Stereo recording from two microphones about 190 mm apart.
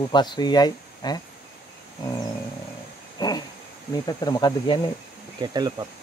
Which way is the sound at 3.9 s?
20° left (ahead or behind).